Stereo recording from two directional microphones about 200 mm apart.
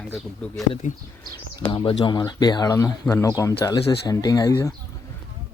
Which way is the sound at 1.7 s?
25° left (ahead or behind).